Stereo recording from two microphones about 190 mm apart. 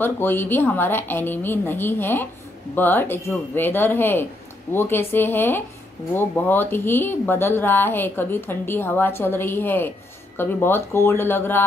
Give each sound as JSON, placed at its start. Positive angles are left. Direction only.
{"t": 0.0, "sound": "speech", "side_deg": 10}